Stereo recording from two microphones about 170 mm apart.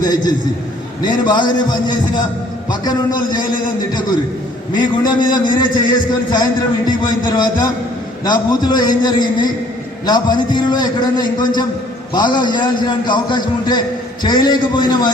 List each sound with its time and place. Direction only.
0.0 s a man's voice: 25° left (ahead or behind)
4.7 s a man's voice: 25° left (ahead or behind)